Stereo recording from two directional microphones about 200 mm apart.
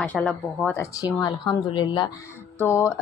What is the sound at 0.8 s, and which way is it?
A woman's voice, 20° left (ahead or behind).